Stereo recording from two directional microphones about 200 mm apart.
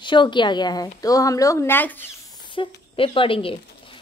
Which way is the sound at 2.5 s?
25° left (ahead or behind).